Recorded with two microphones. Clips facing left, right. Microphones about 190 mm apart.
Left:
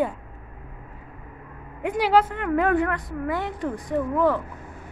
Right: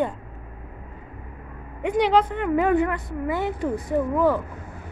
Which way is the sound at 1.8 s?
5° left (ahead or behind).